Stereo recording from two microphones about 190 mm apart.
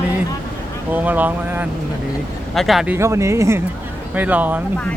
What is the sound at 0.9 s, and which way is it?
Speech, 10° right (ahead or behind).